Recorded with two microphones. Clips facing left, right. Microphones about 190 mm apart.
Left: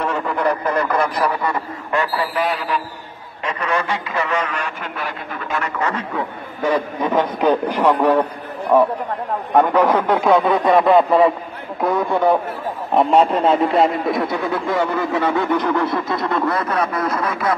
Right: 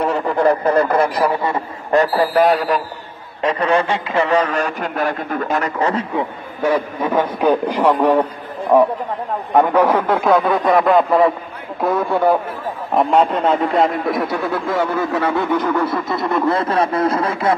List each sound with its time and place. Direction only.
0.0 s speech: 35° right (ahead or behind)
1.9 s a man's voice: 40° right (ahead or behind)
3.4 s a man's voice: 30° right (ahead or behind)
7.1 s a man's voice: 10° right (ahead or behind)
16.3 s speech: 25° right (ahead or behind)